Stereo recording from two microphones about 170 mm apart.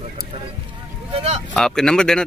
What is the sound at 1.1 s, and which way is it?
Speech, 35° right (ahead or behind).